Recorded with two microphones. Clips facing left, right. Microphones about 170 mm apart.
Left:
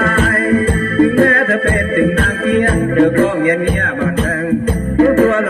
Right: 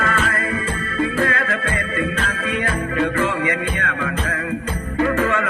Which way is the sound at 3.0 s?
50° left (ahead or behind).